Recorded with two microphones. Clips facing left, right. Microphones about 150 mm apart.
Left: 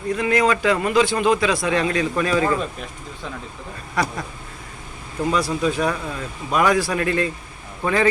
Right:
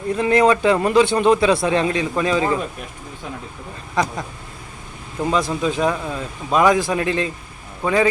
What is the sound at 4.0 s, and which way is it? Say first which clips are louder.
Speech: right 2 dB; 20° right (ahead or behind).